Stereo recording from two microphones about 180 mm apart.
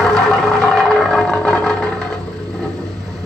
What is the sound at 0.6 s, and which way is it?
Vehicle, centre (ahead or behind).